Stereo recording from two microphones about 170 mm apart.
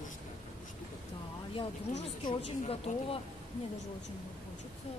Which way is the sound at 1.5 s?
35° left (ahead or behind).